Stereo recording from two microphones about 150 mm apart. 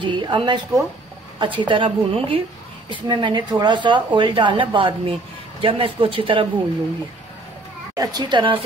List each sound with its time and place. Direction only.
0.0 s speech: 30° right (ahead or behind)
7.9 s a woman's voice: 25° right (ahead or behind)